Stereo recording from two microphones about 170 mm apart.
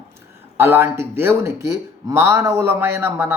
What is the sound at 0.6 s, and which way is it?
Speech, 15° right (ahead or behind).